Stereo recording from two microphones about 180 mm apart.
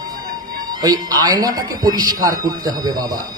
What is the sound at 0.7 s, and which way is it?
A man's voice, 20° right (ahead or behind).